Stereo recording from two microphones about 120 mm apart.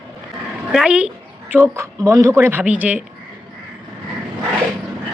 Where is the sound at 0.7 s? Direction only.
10° right (ahead or behind).